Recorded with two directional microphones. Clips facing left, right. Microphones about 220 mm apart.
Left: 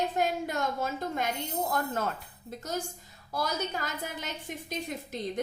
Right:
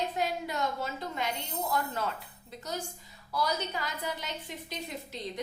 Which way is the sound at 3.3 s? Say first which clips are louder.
Even; 45° left (ahead or behind).